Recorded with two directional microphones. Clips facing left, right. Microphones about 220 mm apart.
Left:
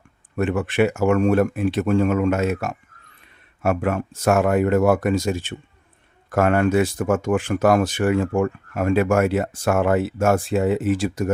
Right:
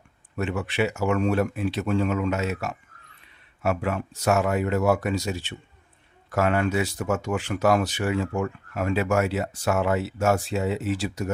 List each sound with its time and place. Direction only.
0.3 s speech: 50° left (ahead or behind)